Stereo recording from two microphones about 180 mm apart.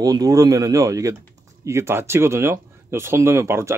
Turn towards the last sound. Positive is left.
turn(degrees=-15)  # may be behind; listen again after turning